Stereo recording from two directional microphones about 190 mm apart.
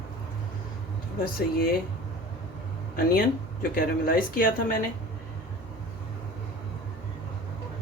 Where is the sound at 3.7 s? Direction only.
50° left (ahead or behind).